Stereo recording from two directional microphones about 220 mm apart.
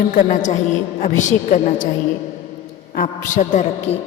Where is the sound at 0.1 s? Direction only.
35° left (ahead or behind).